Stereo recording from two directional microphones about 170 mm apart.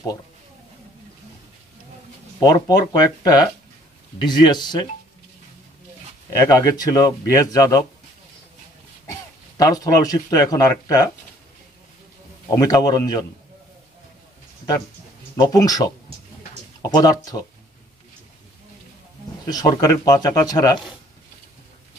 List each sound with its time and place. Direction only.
2.4 s speech: 20° left (ahead or behind)
4.2 s speech: 25° left (ahead or behind)
6.4 s speech: 20° left (ahead or behind)
9.6 s speech: 20° left (ahead or behind)
12.4 s speech: 20° left (ahead or behind)
15.3 s speech: 20° left (ahead or behind)
19.4 s speech: 20° left (ahead or behind)